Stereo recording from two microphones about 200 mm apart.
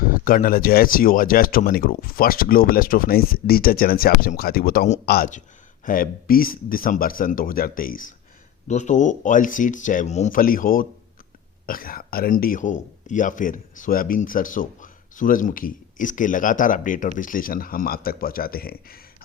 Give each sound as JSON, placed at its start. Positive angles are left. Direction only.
{"t": 0.1, "sound": "speech", "side_deg": 45}